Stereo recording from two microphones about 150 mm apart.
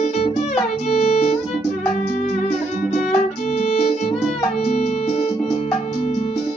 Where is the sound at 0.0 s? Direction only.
45° left (ahead or behind).